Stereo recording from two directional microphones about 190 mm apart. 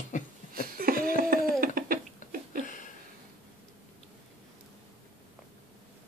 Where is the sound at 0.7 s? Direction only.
50° right (ahead or behind).